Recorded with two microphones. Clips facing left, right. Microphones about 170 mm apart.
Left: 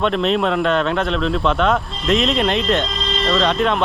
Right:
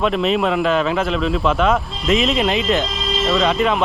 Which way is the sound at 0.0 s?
Centre (ahead or behind).